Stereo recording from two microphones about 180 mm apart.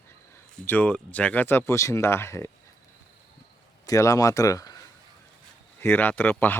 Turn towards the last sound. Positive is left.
turn(degrees=10)  # may be behind; listen again after turning